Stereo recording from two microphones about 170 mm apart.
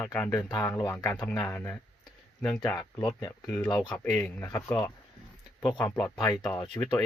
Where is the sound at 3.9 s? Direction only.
10° left (ahead or behind); by 6.7 s 25° left (ahead or behind).